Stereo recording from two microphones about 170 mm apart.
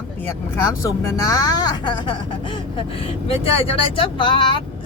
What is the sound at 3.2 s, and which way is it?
Speech, 35° left (ahead or behind).